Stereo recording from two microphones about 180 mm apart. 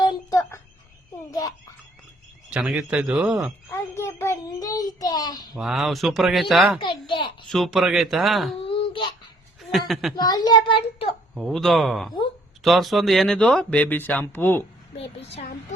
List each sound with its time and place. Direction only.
0.0 s a sound: 20° left (ahead or behind)
2.5 s speech: 5° right (ahead or behind)
3.7 s child singing: 15° left (ahead or behind)
5.5 s speech: centre (ahead or behind)
6.7 s a sound: 25° left (ahead or behind)
7.5 s speech: centre (ahead or behind)
8.5 s babbling: 30° left (ahead or behind)
9.7 s speech: centre (ahead or behind)
10.2 s a child's voice: 20° left (ahead or behind)
11.3 s speech: centre (ahead or behind)
14.9 s a sound: 35° left (ahead or behind)